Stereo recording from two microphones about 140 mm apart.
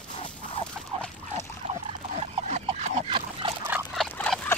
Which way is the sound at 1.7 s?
50° right (ahead or behind).